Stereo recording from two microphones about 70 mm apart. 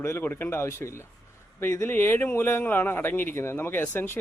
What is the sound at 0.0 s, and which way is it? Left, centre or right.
Speech, left.